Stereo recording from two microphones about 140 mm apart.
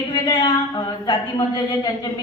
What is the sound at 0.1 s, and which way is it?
A woman's voice, 30° left (ahead or behind).